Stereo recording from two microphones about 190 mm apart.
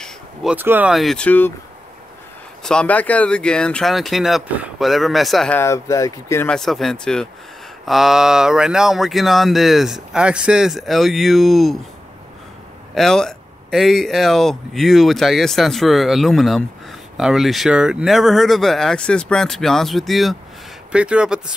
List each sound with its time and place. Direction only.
0.0 s speech: centre (ahead or behind)
2.6 s speech: 5° left (ahead or behind)
5.6 s speech: 15° left (ahead or behind)
6.5 s speech: centre (ahead or behind)
12.9 s speech: centre (ahead or behind)